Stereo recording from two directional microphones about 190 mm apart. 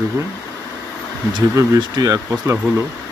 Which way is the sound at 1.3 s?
20° right (ahead or behind).